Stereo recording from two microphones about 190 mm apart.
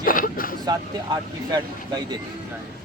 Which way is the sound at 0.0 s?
50° left (ahead or behind).